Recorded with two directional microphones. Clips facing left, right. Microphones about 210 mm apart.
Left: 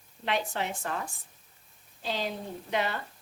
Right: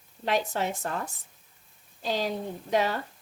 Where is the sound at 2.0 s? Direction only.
45° right (ahead or behind).